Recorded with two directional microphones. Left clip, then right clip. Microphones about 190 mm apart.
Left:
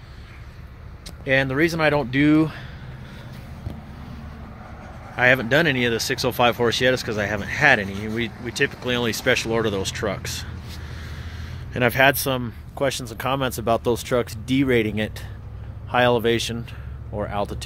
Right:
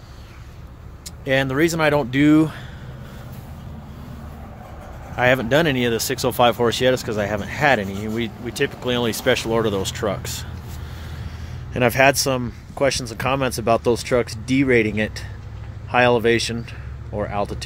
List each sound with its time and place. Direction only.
1.0 s speech: centre (ahead or behind)
5.1 s speech: 5° right (ahead or behind)
11.7 s speech: 10° right (ahead or behind)